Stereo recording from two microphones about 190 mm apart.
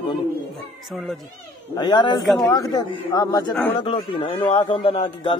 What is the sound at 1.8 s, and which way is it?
Speech, 25° left (ahead or behind).